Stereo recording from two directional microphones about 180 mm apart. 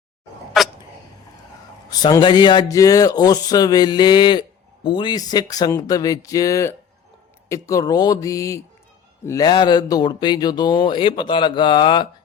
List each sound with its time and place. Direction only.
1.9 s speech: 20° left (ahead or behind)